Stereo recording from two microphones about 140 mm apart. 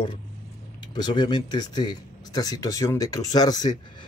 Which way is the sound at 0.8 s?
30° left (ahead or behind).